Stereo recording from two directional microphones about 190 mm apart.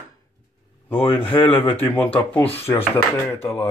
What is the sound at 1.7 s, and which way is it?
Cutlery, 10° left (ahead or behind).